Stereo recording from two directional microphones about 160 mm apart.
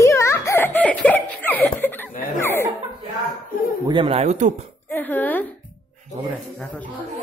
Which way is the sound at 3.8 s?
30° right (ahead or behind).